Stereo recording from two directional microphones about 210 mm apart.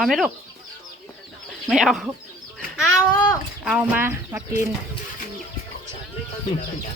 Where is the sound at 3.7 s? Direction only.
5° right (ahead or behind).